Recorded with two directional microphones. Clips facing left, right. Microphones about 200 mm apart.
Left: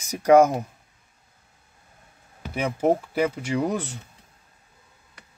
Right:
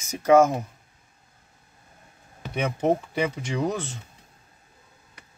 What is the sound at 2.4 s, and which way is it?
Speech, 5° left (ahead or behind).